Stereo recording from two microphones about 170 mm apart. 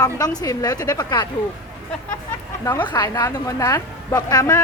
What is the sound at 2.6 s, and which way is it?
A woman's voice, 20° left (ahead or behind).